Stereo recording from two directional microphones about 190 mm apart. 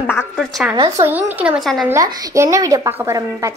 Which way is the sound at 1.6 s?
Centre (ahead or behind).